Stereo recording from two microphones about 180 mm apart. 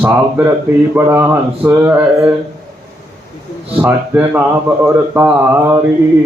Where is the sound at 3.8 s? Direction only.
10° right (ahead or behind).